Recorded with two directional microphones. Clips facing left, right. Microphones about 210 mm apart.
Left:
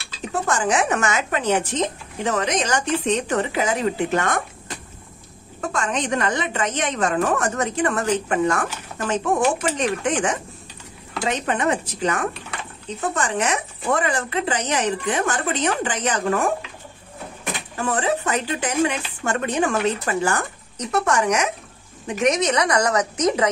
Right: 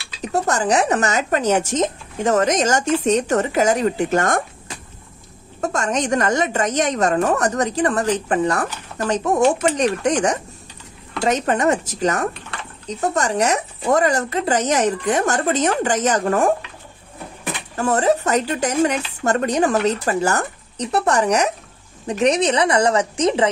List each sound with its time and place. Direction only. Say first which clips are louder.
0.3 s speech: right 3 dB; 40° right (ahead or behind)
5.6 s a woman's voice: right 3 dB; 45° right (ahead or behind)
17.7 s a woman's voice: right 5 dB; 40° right (ahead or behind)